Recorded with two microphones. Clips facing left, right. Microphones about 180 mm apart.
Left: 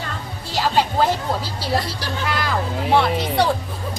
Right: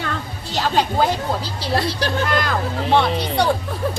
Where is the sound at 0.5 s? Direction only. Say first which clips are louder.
Even; 5° left (ahead or behind).